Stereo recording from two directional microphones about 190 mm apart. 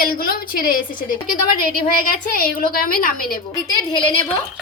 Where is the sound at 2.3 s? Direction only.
50° left (ahead or behind).